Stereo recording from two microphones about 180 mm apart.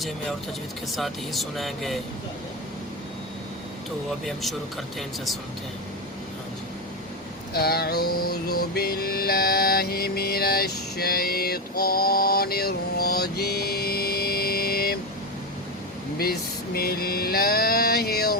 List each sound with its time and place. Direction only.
0.9 s speech: centre (ahead or behind)
4.9 s speech: centre (ahead or behind)
7.5 s music: 60° left (ahead or behind)
16.1 s music: 60° left (ahead or behind)